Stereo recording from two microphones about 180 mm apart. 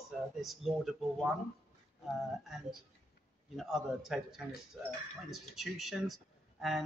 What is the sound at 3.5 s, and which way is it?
Speech, centre (ahead or behind).